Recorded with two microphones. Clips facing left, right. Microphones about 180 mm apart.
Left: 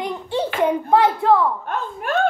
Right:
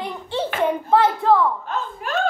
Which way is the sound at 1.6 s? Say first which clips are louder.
Left 2 dB; 55° left (ahead or behind).